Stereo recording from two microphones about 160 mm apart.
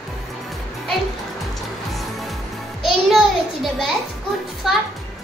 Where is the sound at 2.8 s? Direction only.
Centre (ahead or behind).